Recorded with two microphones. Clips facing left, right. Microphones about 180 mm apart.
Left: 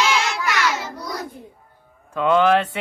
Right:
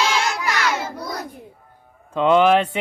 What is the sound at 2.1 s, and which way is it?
Speech, 20° right (ahead or behind).